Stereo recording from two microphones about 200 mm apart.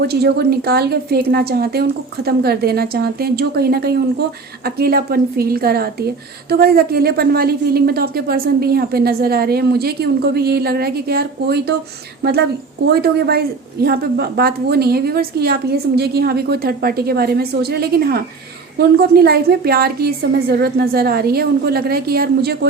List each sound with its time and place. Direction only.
0.0 s a woman's voice: 55° right (ahead or behind)
12.8 s a woman's voice: 50° right (ahead or behind)